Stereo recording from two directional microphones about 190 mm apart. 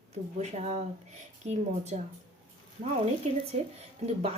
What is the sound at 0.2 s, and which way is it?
Speech, 35° right (ahead or behind).